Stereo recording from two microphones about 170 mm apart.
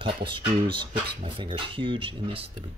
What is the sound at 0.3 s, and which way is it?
Speech, 30° right (ahead or behind).